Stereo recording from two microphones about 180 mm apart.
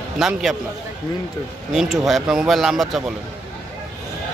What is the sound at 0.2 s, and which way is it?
Speech, centre (ahead or behind).